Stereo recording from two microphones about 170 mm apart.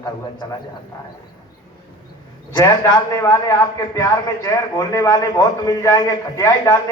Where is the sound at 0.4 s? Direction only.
20° left (ahead or behind).